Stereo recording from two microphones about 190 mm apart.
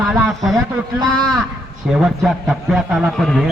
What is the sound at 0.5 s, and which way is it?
Speech, 20° right (ahead or behind).